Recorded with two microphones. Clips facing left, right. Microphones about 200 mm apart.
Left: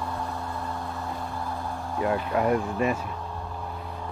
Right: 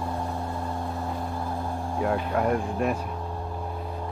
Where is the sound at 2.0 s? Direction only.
5° left (ahead or behind).